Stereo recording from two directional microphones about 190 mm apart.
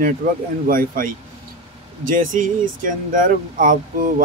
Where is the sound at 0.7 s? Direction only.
45° right (ahead or behind).